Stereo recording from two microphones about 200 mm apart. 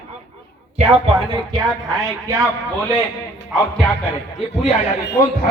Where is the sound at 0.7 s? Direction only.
30° right (ahead or behind).